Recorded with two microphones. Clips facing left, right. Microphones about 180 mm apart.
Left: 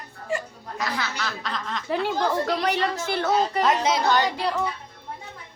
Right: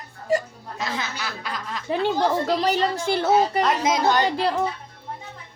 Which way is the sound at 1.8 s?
25° right (ahead or behind).